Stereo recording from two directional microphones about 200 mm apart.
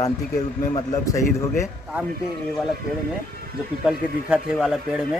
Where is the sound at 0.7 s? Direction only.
15° left (ahead or behind).